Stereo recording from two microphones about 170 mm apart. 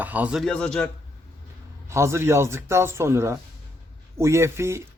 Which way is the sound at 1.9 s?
15° right (ahead or behind).